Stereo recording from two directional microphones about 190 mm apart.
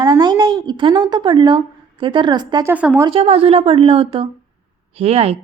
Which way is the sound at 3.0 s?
30° right (ahead or behind).